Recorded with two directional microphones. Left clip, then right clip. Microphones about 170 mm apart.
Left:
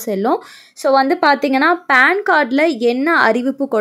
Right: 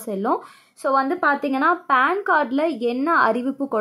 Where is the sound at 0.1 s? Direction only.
30° left (ahead or behind).